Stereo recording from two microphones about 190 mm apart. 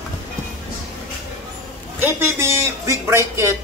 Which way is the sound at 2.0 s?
10° right (ahead or behind).